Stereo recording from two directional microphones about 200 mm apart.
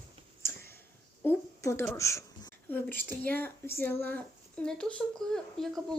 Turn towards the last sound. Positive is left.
turn(degrees=0)  # may be behind; listen again after turning